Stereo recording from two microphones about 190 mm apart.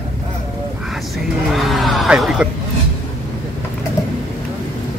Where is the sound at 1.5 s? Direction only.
Centre (ahead or behind).